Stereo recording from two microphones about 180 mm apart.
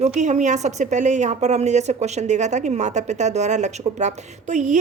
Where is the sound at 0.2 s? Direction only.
40° right (ahead or behind).